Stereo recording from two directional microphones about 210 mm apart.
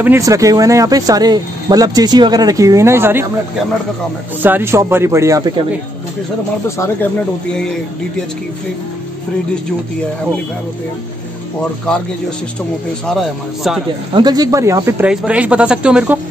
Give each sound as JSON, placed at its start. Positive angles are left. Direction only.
{"t": 0.0, "sound": "speech", "side_deg": -15}
{"t": 4.4, "sound": "speech", "side_deg": -10}
{"t": 13.0, "sound": "a man's voice", "side_deg": 0}
{"t": 14.1, "sound": "speech", "side_deg": -20}